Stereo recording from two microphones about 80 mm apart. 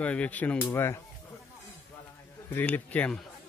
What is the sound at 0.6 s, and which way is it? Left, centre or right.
Speech, left.